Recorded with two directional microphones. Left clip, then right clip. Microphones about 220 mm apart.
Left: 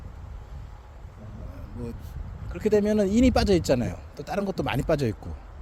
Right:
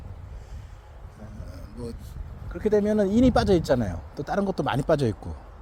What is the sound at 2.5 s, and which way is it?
A man's voice, centre (ahead or behind).